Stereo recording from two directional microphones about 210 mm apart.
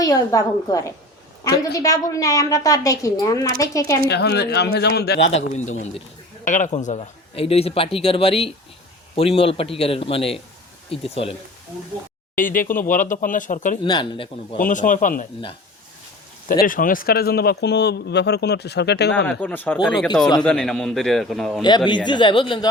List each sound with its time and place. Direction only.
0.0 s a woman's voice: 15° left (ahead or behind)
4.1 s a man's voice: 50° left (ahead or behind)
5.3 s a man's voice: 35° left (ahead or behind)
12.4 s speech: 40° left (ahead or behind)
13.8 s a man's voice: 20° left (ahead or behind)
14.6 s speech: 40° left (ahead or behind)
16.5 s a man's voice: 40° left (ahead or behind)
19.1 s a woman's voice: 5° left (ahead or behind)
21.8 s a man's voice: 20° left (ahead or behind)